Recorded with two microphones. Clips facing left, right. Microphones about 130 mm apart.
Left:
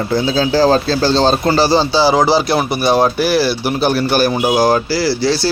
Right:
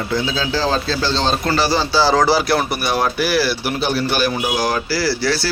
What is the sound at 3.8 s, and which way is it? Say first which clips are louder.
A man's voice: left 6 dB; 45° left (ahead or behind).